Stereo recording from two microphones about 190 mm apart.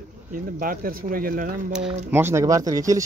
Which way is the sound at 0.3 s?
45° right (ahead or behind).